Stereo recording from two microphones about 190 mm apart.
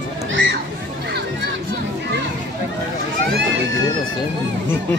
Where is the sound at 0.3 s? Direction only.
75° right (ahead or behind).